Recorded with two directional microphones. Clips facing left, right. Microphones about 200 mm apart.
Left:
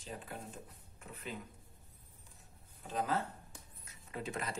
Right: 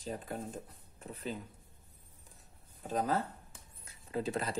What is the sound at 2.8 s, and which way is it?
Speech, 40° right (ahead or behind).